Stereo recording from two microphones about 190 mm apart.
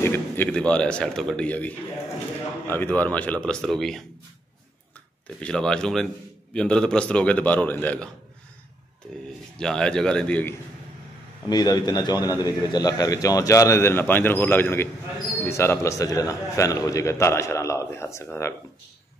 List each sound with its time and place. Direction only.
0.0 s a man's voice: 10° left (ahead or behind)
5.4 s a man's voice: 5° left (ahead or behind)
9.6 s speech: 5° left (ahead or behind)
11.4 s a man's voice: 20° left (ahead or behind)